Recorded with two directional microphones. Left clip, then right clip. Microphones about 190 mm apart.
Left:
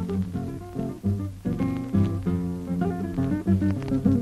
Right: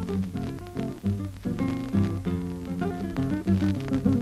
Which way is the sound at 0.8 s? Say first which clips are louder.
Left 1 dB; 25° left (ahead or behind).